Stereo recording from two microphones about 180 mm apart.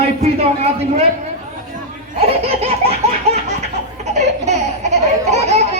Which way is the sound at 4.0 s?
40° right (ahead or behind).